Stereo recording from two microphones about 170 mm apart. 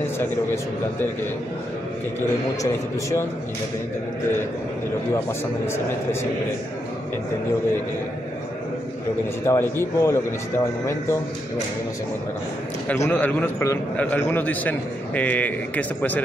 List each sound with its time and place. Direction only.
2.1 s a man's voice: 15° left (ahead or behind)
9.5 s a man's voice: 15° left (ahead or behind)
12.8 s a man's voice: 10° left (ahead or behind)